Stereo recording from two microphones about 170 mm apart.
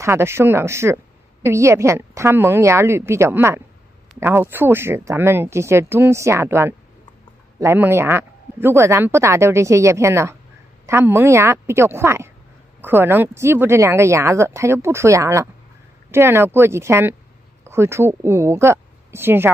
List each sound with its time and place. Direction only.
0.0 s speech: 15° right (ahead or behind)